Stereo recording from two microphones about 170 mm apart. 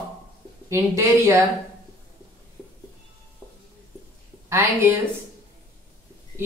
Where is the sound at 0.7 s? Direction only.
15° right (ahead or behind).